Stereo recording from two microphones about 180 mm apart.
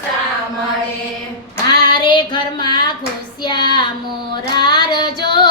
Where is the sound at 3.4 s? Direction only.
25° left (ahead or behind).